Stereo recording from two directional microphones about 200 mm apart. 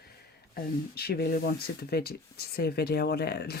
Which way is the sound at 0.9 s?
50° left (ahead or behind).